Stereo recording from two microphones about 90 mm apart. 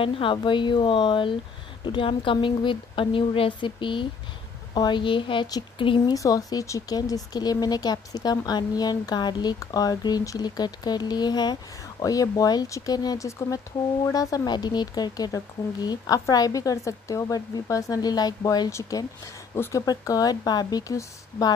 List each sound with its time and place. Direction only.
0.0 s a woman's voice: 70° left (ahead or behind)
6.1 s speech: 40° left (ahead or behind)
18.7 s speech: 35° left (ahead or behind)
19.9 s speech: 45° left (ahead or behind)